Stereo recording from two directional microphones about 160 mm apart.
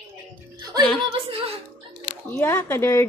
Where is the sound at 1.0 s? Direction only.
35° right (ahead or behind).